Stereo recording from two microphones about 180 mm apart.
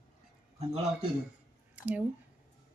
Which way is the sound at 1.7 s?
10° right (ahead or behind).